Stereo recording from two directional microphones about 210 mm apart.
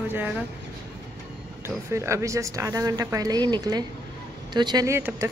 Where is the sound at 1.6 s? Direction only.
15° right (ahead or behind).